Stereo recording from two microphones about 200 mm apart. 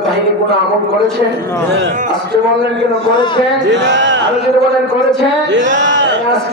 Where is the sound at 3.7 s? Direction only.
65° right (ahead or behind).